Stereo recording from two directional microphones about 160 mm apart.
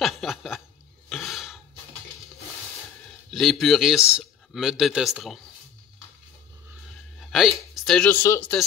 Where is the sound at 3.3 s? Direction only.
Centre (ahead or behind).